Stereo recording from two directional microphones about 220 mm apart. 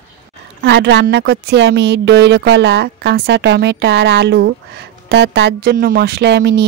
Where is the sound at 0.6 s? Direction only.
50° right (ahead or behind).